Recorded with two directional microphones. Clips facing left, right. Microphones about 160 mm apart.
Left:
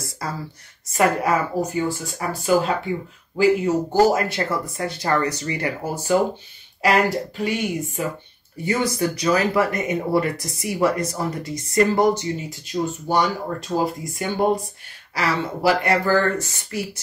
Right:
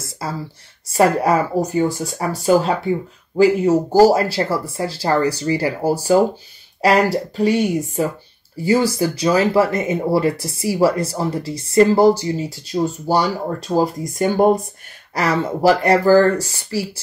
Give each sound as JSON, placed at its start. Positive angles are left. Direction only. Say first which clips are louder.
{"t": 0.8, "sound": "speech", "louder": "right 4 dB", "side_deg": -35}
{"t": 3.9, "sound": "speech", "louder": "right 5 dB", "side_deg": -35}